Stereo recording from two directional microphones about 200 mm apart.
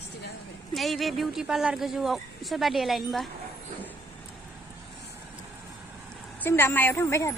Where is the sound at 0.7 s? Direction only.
Centre (ahead or behind).